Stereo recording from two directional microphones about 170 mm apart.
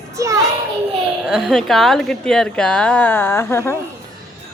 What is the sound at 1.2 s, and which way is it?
A woman's voice, centre (ahead or behind).